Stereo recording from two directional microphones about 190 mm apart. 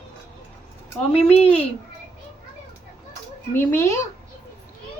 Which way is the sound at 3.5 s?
10° left (ahead or behind).